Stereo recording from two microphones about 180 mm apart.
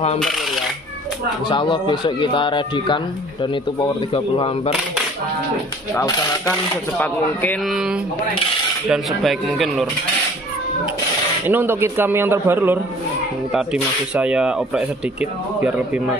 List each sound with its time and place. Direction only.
1.5 s speech: 25° left (ahead or behind)
4.1 s speech: 30° left (ahead or behind)
5.9 s speech: 15° left (ahead or behind)
7.6 s speech: 5° right (ahead or behind)
11.4 s a man's voice: 10° right (ahead or behind)
14.1 s speech: 5° right (ahead or behind)